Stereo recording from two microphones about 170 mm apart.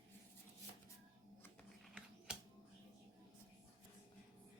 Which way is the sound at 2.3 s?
5° right (ahead or behind).